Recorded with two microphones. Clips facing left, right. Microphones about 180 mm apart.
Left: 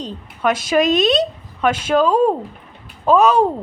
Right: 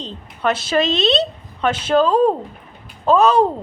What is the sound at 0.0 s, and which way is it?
A woman's voice, 10° left (ahead or behind).